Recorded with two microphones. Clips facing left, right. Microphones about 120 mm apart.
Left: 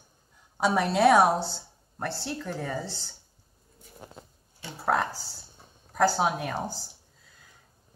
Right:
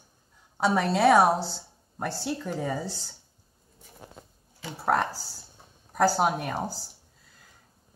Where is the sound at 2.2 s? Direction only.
10° right (ahead or behind).